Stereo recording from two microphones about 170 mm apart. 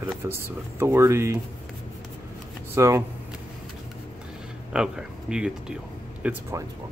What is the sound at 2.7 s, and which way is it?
Speech, 15° right (ahead or behind).